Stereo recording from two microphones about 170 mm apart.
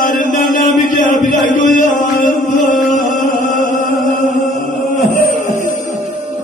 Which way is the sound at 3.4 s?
50° left (ahead or behind).